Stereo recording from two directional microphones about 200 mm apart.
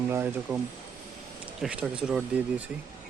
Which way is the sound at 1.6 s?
5° right (ahead or behind).